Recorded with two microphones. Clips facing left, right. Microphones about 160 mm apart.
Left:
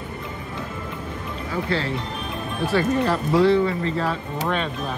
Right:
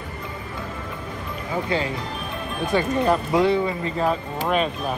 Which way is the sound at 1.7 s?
15° right (ahead or behind).